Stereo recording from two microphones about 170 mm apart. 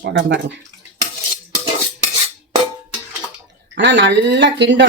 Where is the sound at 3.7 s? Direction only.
90° right.